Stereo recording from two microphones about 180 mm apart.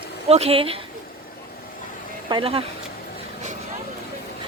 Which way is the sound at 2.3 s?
30° right (ahead or behind).